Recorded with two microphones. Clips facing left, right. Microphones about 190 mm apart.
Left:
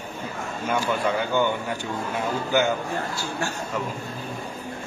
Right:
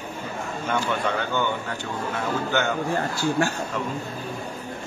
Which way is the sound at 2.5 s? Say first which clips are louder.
Left 4 dB; 10° left (ahead or behind).